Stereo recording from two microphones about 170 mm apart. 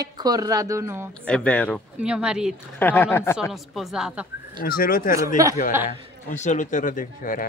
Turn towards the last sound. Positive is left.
turn(degrees=55)  # may be behind; listen again after turning